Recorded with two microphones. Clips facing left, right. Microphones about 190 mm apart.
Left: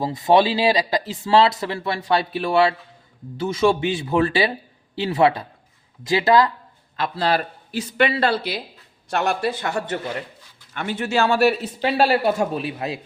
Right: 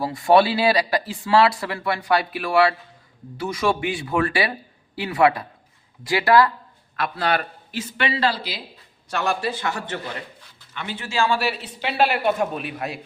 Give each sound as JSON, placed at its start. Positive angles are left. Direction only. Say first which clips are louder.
{"t": 0.0, "sound": "a man's voice", "louder": "even", "side_deg": 20}
{"t": 11.3, "sound": "speech", "louder": "left 6 dB", "side_deg": 45}